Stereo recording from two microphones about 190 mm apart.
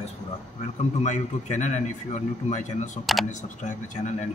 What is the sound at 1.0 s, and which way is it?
A man's voice, 40° left (ahead or behind).